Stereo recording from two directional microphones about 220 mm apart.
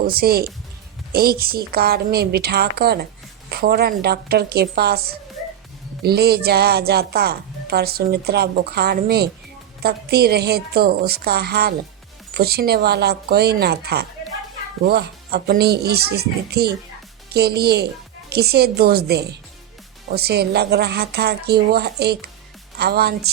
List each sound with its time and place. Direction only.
0.1 s speech: 45° right (ahead or behind)